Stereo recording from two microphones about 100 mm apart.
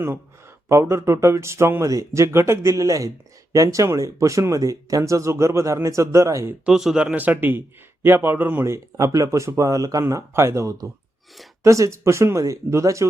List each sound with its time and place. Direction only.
0.7 s speech: 30° right (ahead or behind)
6.7 s speech: 5° right (ahead or behind); by 13.1 s 30° right (ahead or behind)